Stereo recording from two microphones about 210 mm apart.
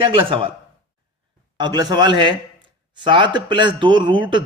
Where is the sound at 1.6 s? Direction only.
20° right (ahead or behind).